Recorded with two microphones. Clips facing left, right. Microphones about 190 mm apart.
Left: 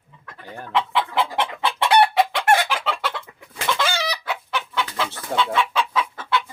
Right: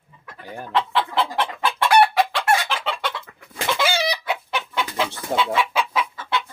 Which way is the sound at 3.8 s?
10° right (ahead or behind).